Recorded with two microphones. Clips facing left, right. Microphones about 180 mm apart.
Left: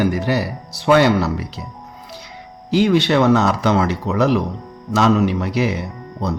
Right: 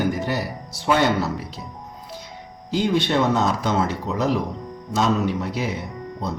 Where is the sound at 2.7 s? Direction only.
75° left (ahead or behind).